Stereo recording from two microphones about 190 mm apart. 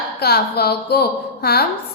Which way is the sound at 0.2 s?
60° left (ahead or behind).